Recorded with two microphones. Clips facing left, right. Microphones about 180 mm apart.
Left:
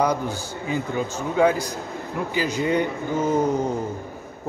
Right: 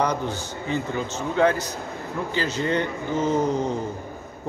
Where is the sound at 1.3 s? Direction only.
10° left (ahead or behind).